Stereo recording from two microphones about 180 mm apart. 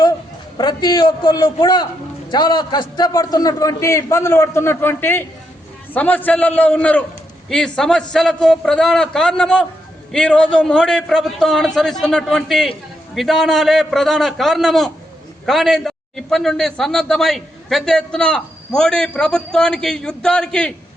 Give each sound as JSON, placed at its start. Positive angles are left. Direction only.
{"t": 0.5, "sound": "a man's voice", "side_deg": 25}